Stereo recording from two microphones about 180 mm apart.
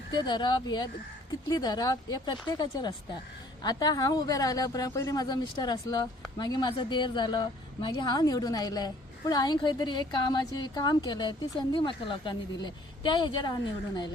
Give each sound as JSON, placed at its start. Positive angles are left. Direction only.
{"t": 0.2, "sound": "a woman's voice", "side_deg": 25}